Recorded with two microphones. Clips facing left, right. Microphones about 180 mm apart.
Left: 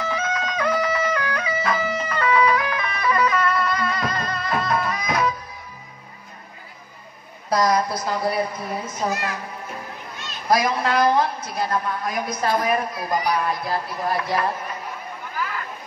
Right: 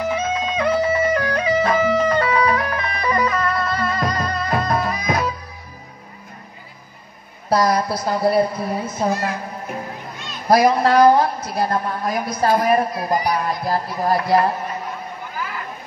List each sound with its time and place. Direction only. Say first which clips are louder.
0.1 s music: right 4 dB; 25° right (ahead or behind)
7.4 s a woman's voice: right 2 dB; 35° right (ahead or behind)
10.5 s a woman's voice: right 6 dB; 40° right (ahead or behind)